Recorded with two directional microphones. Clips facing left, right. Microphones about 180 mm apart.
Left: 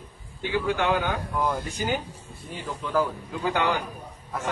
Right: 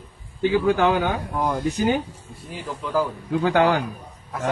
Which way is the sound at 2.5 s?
Centre (ahead or behind).